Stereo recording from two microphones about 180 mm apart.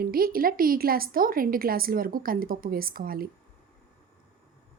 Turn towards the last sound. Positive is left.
turn(degrees=-55)  # may be behind; listen again after turning